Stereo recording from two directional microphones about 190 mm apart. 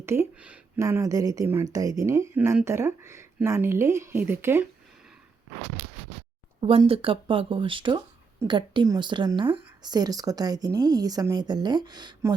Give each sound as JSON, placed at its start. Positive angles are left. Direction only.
{"t": 0.0, "sound": "a woman's voice", "side_deg": -15}
{"t": 6.6, "sound": "a woman's voice", "side_deg": -30}